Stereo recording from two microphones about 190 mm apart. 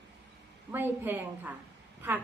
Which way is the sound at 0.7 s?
10° right (ahead or behind).